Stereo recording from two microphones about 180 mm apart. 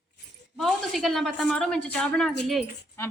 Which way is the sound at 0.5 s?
5° left (ahead or behind).